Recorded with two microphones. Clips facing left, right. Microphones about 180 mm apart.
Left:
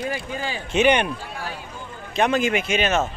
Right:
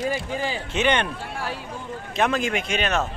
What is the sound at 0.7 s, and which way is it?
Speech, 15° left (ahead or behind).